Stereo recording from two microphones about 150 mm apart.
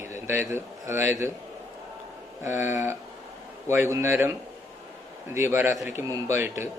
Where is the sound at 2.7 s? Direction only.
20° right (ahead or behind).